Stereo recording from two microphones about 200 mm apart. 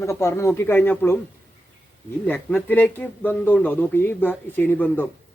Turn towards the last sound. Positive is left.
turn(degrees=10)  # may be behind; listen again after turning